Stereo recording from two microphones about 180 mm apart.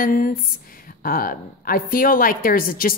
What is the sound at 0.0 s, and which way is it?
A woman's voice, 50° left (ahead or behind).